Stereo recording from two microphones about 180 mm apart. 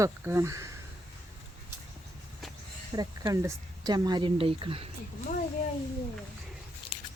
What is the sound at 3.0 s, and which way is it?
A woman's voice, 20° right (ahead or behind).